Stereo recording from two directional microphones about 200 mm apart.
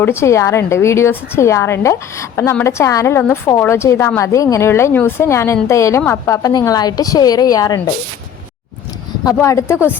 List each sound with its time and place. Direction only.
0.0 s a woman's voice: 10° left (ahead or behind)
9.2 s a woman's voice: 15° left (ahead or behind)